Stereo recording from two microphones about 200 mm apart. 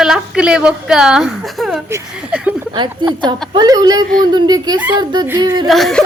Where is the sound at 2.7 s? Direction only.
25° right (ahead or behind).